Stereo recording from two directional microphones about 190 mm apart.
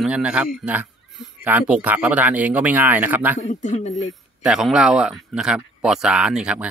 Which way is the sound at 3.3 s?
40° left (ahead or behind).